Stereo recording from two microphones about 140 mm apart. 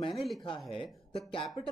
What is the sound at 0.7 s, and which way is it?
Speech, 40° left (ahead or behind).